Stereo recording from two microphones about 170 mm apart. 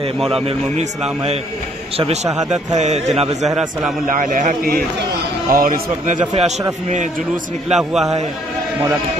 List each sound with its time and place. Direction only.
0.3 s a man's voice: 35° right (ahead or behind)
2.3 s a man's voice: 40° right (ahead or behind)
7.7 s a man's voice: centre (ahead or behind)